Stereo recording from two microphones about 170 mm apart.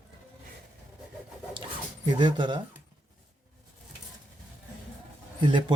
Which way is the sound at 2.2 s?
25° right (ahead or behind).